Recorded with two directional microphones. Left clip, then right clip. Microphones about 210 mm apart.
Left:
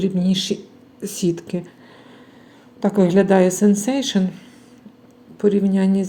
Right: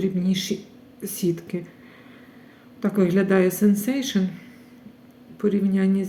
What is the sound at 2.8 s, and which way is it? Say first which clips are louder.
A woman's voice: left 6 dB; 20° left (ahead or behind).